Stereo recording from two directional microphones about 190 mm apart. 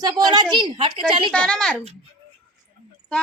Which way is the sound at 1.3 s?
5° left (ahead or behind).